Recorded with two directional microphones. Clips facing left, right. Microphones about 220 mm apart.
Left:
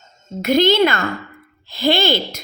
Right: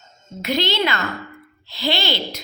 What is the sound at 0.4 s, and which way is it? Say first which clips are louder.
A woman's voice: left 8 dB; 50° left (ahead or behind).